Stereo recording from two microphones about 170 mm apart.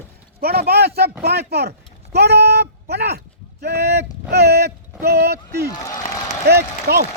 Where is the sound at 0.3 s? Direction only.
65° right (ahead or behind).